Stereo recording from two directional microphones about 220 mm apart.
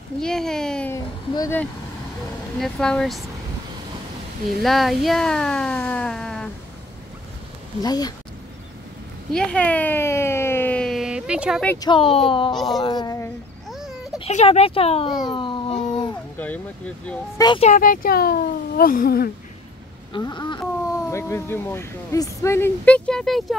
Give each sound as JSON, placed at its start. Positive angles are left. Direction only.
{"t": 0.2, "sound": "speech", "side_deg": 0}
{"t": 2.6, "sound": "speech", "side_deg": 5}
{"t": 4.6, "sound": "speech", "side_deg": 0}
{"t": 7.8, "sound": "speech", "side_deg": 15}
{"t": 9.3, "sound": "a sound", "side_deg": 5}
{"t": 11.6, "sound": "speech", "side_deg": 10}
{"t": 11.9, "sound": "a child's voice", "side_deg": 25}
{"t": 13.7, "sound": "a sound", "side_deg": 0}
{"t": 14.2, "sound": "a child's voice", "side_deg": 30}
{"t": 16.3, "sound": "speech", "side_deg": 5}
{"t": 17.4, "sound": "speech", "side_deg": 20}
{"t": 17.6, "sound": "speech", "side_deg": 40}
{"t": 20.1, "sound": "speech", "side_deg": 20}